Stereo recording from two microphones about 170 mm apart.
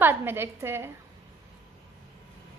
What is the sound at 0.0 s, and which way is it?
Speech, 10° right (ahead or behind).